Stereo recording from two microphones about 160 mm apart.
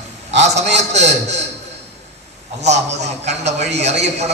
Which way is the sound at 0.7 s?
45° right (ahead or behind).